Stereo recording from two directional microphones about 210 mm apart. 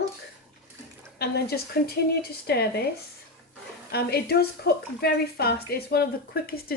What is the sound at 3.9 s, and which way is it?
A woman's voice, 50° left (ahead or behind).